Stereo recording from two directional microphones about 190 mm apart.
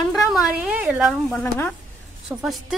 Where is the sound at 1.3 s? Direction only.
5° left (ahead or behind).